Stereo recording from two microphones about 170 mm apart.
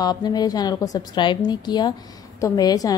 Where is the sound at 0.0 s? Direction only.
25° left (ahead or behind).